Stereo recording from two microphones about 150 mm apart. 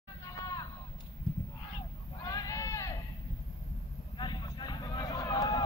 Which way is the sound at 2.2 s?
25° left (ahead or behind).